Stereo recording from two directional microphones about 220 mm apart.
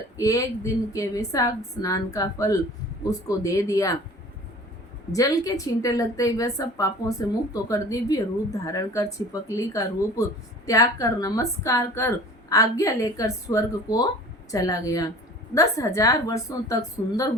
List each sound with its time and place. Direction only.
0.2 s a woman's voice: 15° left (ahead or behind)
5.1 s a woman's voice: 15° left (ahead or behind)